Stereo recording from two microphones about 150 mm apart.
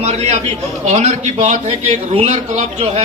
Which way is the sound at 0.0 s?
50° right (ahead or behind).